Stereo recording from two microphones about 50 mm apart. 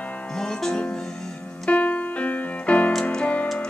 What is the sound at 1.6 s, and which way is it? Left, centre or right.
Keyboard, left.